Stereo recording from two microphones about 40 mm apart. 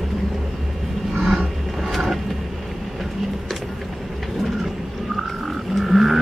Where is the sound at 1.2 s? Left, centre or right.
Centre.